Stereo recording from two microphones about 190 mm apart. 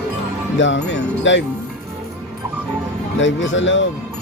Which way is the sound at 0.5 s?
75° left (ahead or behind).